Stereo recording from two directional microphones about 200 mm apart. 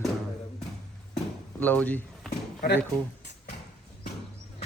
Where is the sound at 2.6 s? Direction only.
55° left (ahead or behind).